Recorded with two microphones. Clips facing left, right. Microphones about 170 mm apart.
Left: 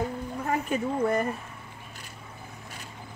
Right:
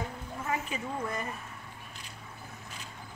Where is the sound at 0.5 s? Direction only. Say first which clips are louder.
Left 7 dB; 55° left (ahead or behind).